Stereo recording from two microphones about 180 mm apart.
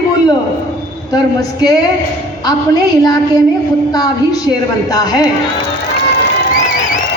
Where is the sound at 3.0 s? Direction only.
20° left (ahead or behind).